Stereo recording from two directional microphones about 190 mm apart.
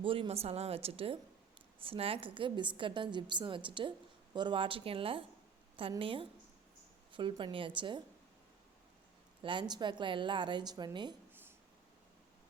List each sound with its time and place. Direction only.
0.0 s a woman's voice: 30° right (ahead or behind)
9.4 s a woman's voice: 25° right (ahead or behind)